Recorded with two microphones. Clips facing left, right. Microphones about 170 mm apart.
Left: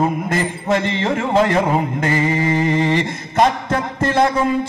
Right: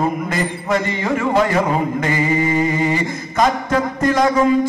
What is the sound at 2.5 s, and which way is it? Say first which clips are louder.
Mantra: left 1 dB; 10° right (ahead or behind).